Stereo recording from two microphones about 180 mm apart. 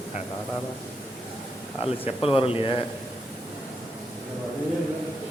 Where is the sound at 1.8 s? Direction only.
30° left (ahead or behind).